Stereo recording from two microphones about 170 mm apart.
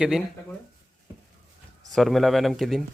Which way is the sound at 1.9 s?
Centre (ahead or behind).